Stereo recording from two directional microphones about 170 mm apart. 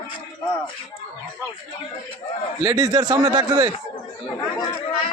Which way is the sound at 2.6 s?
25° right (ahead or behind).